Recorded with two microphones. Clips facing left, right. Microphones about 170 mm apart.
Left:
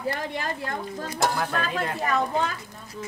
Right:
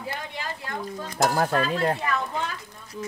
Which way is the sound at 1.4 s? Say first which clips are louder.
Right 4 dB; 35° right (ahead or behind).